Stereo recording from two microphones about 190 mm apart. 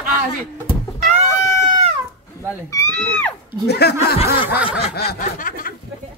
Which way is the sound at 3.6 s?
60° left (ahead or behind).